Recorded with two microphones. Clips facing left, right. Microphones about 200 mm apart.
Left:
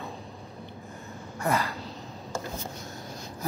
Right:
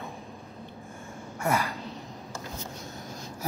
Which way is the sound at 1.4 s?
15° right (ahead or behind).